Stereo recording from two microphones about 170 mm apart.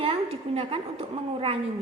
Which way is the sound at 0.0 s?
35° right (ahead or behind).